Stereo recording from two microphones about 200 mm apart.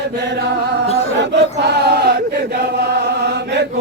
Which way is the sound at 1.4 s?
55° right (ahead or behind).